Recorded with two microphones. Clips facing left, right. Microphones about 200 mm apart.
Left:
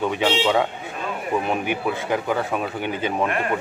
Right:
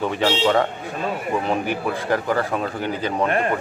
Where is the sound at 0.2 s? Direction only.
5° left (ahead or behind).